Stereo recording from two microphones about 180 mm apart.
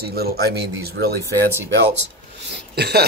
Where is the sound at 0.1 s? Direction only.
60° right (ahead or behind).